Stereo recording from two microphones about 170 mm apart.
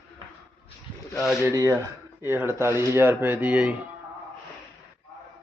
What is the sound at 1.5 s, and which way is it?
Speech, 15° right (ahead or behind).